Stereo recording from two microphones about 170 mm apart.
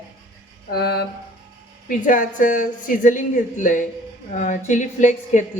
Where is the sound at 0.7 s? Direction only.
70° left (ahead or behind).